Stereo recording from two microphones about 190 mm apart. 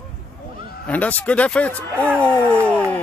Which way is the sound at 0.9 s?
10° left (ahead or behind).